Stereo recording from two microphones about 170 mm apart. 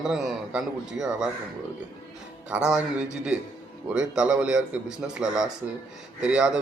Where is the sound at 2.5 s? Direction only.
5° right (ahead or behind).